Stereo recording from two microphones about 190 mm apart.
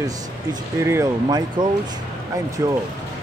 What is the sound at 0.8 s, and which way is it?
Speech, 15° right (ahead or behind).